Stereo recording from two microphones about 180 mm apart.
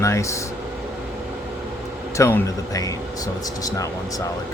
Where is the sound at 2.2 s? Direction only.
15° left (ahead or behind).